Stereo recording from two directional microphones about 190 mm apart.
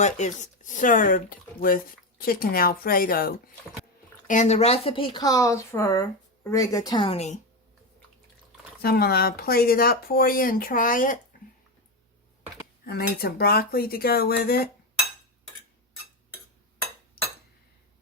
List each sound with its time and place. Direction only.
0.0 s speech: 40° left (ahead or behind)
4.3 s speech: 40° left (ahead or behind)
8.8 s speech: 55° left (ahead or behind)
12.8 s speech: 50° left (ahead or behind)